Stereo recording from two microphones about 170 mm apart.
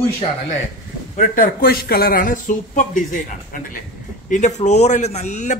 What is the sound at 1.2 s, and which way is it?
A man's voice, 55° left (ahead or behind).